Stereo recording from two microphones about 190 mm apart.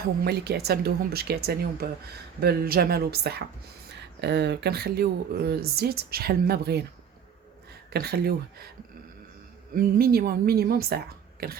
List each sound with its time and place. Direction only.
0.3 s speech: 55° right (ahead or behind)
7.9 s speech: 55° right (ahead or behind)
9.7 s speech: 50° right (ahead or behind)